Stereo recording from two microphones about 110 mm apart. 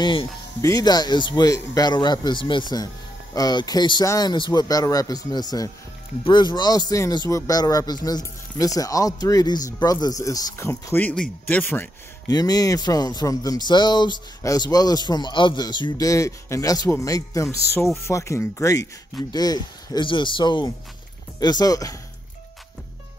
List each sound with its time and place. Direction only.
0.0 s speech: 50° left (ahead or behind)
0.6 s speech: 30° left (ahead or behind)
12.3 s speech: 35° left (ahead or behind)